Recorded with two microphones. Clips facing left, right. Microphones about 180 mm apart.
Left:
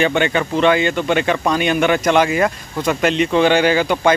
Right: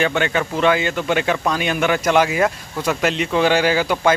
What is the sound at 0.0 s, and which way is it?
Speech, centre (ahead or behind).